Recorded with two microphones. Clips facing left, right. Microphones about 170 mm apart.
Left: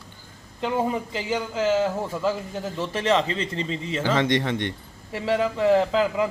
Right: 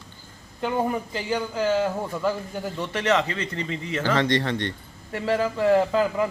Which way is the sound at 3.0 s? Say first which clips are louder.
Left 1 dB; 30° left (ahead or behind).